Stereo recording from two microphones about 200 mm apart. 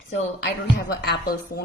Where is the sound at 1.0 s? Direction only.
50° left (ahead or behind).